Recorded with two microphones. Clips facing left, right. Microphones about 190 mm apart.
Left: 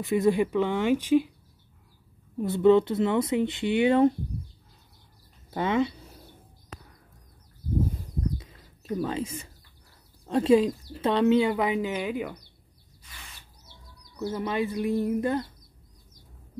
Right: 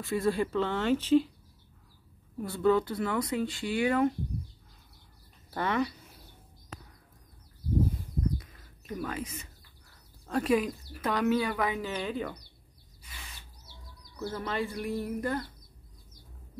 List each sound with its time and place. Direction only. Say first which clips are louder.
0.0 s a woman's voice: left 5 dB; 20° left (ahead or behind)
2.3 s speech: left 6 dB; 20° left (ahead or behind)
5.5 s speech: left 4 dB; 25° left (ahead or behind)
8.8 s speech: left 6 dB; 30° left (ahead or behind); by 12.4 s 10° left (ahead or behind)
14.2 s speech: left 5 dB; 15° left (ahead or behind)